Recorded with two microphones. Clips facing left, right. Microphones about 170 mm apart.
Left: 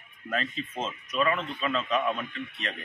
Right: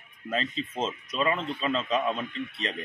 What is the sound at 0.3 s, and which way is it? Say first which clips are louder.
Speech: right 1 dB; 30° right (ahead or behind).